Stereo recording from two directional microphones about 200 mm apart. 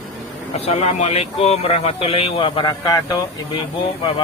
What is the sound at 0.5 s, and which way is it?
Speech, 30° left (ahead or behind).